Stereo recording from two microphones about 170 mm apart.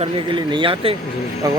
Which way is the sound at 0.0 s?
30° right (ahead or behind).